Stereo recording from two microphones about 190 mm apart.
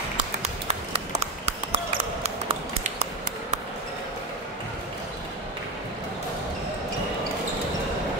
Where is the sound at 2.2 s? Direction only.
30° right (ahead or behind).